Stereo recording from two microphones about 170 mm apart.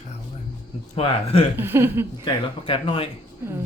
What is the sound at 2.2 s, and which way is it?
Speech, 30° left (ahead or behind).